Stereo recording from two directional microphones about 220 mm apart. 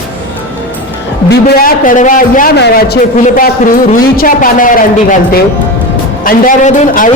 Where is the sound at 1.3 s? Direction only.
40° left (ahead or behind).